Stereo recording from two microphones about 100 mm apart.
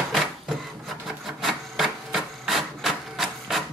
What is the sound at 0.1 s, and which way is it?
Printer, centre (ahead or behind).